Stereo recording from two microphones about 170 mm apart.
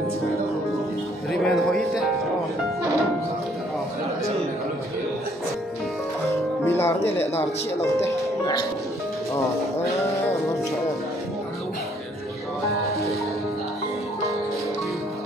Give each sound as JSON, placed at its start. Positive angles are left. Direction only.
{"t": 1.3, "sound": "speech", "side_deg": 5}
{"t": 6.6, "sound": "music", "side_deg": 15}
{"t": 7.1, "sound": "speech", "side_deg": 15}